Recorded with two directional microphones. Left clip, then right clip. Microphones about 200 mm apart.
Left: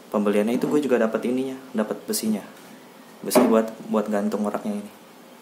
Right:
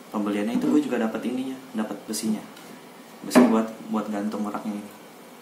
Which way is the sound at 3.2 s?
45° left (ahead or behind).